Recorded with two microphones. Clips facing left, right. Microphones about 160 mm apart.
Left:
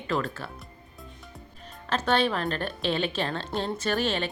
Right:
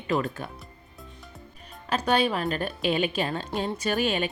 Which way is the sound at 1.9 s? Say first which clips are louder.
Right 1 dB; 10° right (ahead or behind).